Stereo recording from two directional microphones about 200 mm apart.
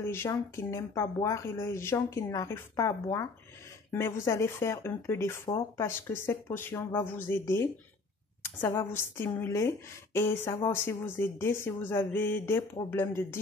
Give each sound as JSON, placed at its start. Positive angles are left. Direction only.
{"t": 0.0, "sound": "speech", "side_deg": 10}